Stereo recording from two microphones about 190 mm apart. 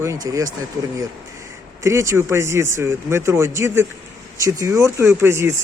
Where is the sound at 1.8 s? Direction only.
15° right (ahead or behind).